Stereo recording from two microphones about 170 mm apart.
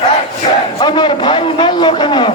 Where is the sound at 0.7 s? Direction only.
25° left (ahead or behind).